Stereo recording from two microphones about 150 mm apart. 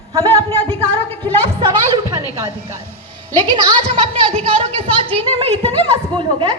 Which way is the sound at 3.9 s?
45° right (ahead or behind).